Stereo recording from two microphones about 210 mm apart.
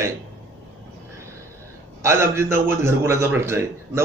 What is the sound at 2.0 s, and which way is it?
A man's voice, 10° right (ahead or behind).